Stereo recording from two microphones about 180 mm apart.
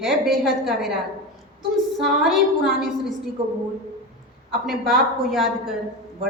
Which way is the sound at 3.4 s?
30° right (ahead or behind).